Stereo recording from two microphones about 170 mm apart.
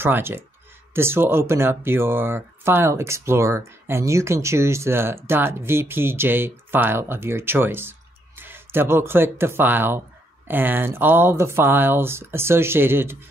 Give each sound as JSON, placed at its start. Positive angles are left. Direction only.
{"t": 0.0, "sound": "speech", "side_deg": -15}